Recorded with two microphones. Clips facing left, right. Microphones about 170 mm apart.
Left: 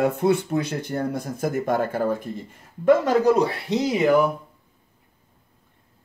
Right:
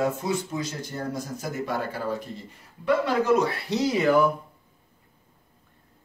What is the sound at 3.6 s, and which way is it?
Speech, 20° left (ahead or behind).